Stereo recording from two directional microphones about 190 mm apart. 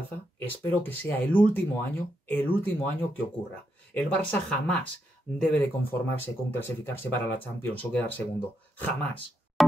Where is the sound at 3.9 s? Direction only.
5° left (ahead or behind).